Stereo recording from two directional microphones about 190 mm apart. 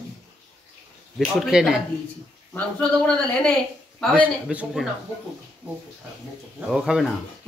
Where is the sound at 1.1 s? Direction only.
Centre (ahead or behind).